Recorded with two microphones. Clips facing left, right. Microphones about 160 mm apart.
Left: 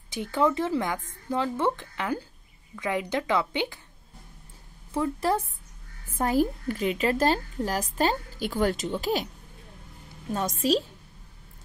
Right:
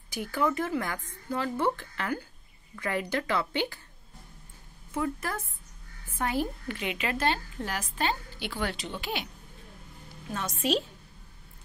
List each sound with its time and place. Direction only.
0.1 s speech: 25° left (ahead or behind)
4.9 s a woman's voice: 30° left (ahead or behind)
10.3 s a woman's voice: 40° left (ahead or behind)